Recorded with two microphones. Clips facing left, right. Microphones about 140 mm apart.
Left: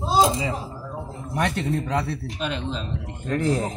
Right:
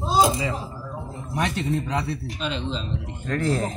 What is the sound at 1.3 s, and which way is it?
Speech, 55° left (ahead or behind).